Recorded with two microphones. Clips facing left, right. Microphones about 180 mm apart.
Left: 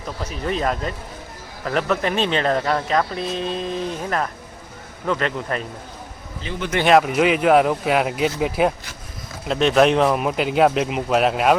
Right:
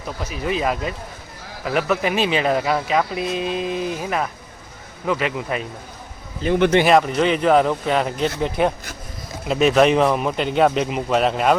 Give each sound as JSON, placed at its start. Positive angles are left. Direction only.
{"t": 0.4, "sound": "speech", "side_deg": -5}
{"t": 6.4, "sound": "speech", "side_deg": -60}
{"t": 6.8, "sound": "speech", "side_deg": 5}